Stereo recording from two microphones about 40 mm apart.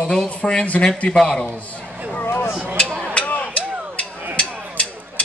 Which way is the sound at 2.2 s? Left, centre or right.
Left.